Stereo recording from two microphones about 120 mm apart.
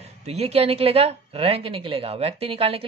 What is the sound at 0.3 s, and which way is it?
Speech, 55° right (ahead or behind).